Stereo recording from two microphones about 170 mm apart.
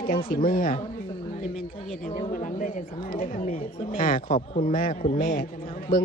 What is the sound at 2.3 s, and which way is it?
Speech, 50° left (ahead or behind).